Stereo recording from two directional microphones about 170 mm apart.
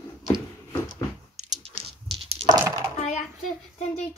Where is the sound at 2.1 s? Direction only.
35° right (ahead or behind).